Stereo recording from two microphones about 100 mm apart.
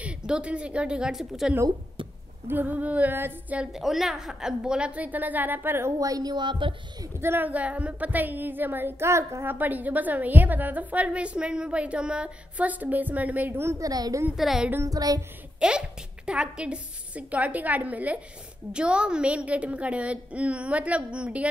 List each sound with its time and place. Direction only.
0.3 s a woman's voice: 10° right (ahead or behind)
2.4 s a woman's voice: 20° right (ahead or behind)
3.7 s a woman's voice: 5° right (ahead or behind); by 7.1 s 50° right (ahead or behind)
7.2 s a woman's voice: 20° right (ahead or behind); by 14.2 s 40° right (ahead or behind)
14.3 s speech: 5° right (ahead or behind)
14.7 s music: 30° right (ahead or behind)
15.6 s a woman's voice: 10° right (ahead or behind)